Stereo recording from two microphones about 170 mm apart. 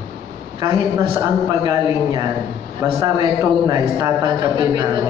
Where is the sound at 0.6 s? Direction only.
25° right (ahead or behind).